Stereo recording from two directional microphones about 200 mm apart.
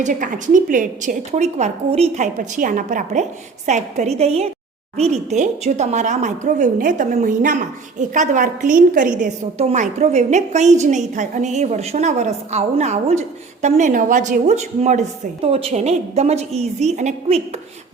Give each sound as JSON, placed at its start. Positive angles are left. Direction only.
{"t": 0.0, "sound": "a woman's voice", "side_deg": -40}